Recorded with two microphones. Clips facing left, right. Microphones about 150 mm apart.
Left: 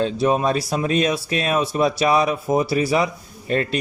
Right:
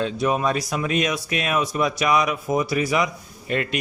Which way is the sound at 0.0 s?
30° left (ahead or behind).